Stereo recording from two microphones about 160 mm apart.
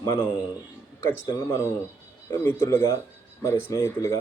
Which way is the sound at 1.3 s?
25° left (ahead or behind).